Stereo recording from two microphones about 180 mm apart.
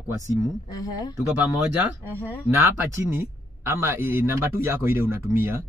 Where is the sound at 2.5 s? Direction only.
15° right (ahead or behind).